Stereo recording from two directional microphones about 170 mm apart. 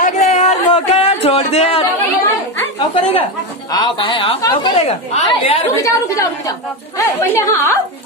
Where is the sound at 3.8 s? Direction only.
30° left (ahead or behind).